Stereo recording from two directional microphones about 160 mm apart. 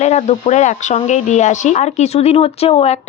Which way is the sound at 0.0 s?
45° left (ahead or behind).